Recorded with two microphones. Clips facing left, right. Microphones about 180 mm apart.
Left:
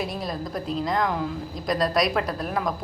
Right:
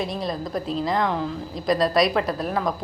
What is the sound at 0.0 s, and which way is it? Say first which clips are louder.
A woman's voice: right 2 dB; centre (ahead or behind).